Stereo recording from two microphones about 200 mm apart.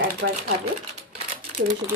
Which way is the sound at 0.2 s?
65° right (ahead or behind).